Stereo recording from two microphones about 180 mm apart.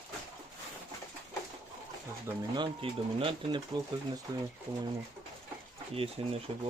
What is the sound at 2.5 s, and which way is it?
Speech, 25° right (ahead or behind).